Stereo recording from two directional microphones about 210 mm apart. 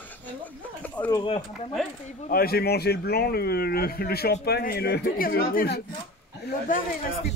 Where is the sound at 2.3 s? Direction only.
45° left (ahead or behind).